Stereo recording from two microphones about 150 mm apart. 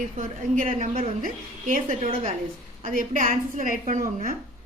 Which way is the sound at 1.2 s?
60° right (ahead or behind).